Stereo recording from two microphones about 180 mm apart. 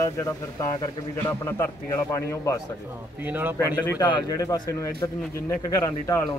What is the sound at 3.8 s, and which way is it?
Speech, 20° left (ahead or behind).